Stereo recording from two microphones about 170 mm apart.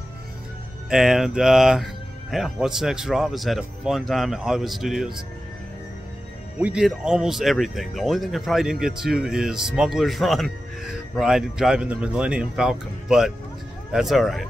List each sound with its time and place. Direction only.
0.8 s speech: 5° right (ahead or behind)
6.6 s speech: 5° right (ahead or behind)